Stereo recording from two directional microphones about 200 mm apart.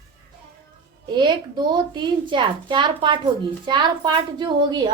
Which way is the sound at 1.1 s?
20° right (ahead or behind).